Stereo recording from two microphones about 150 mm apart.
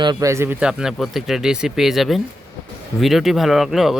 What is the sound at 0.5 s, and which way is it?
Speech, 5° right (ahead or behind).